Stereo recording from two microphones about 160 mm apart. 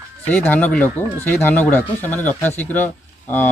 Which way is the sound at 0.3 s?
10° left (ahead or behind).